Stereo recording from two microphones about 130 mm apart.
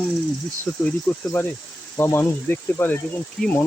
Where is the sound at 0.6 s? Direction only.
15° left (ahead or behind).